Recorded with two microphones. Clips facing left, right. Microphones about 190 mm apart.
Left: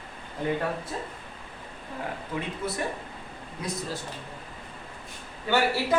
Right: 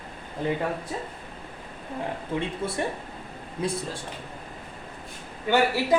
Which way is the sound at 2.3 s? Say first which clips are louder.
Right 5 dB; 25° right (ahead or behind).